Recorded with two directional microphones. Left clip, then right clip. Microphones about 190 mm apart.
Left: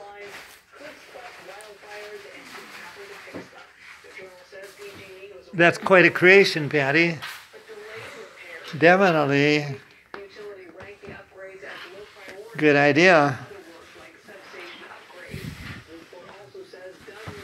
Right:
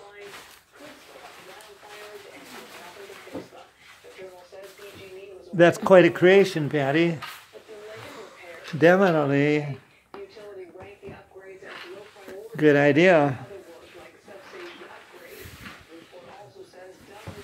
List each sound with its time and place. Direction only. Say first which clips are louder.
5.6 s speech: right 1 dB; 25° right (ahead or behind)
8.7 s speech: left 1 dB; 25° right (ahead or behind)
9.1 s speech: left 2 dB; 10° right (ahead or behind)
12.5 s speech: left 1 dB; 25° right (ahead or behind)